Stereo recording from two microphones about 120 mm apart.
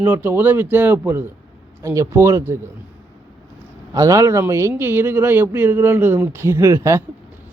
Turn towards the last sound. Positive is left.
turn(degrees=-25)  # may be behind; listen again after turning